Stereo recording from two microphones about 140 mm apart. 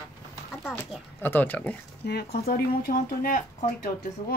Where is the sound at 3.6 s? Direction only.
75° left (ahead or behind).